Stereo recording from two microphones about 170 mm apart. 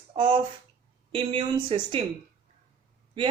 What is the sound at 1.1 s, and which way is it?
Speech, 30° right (ahead or behind).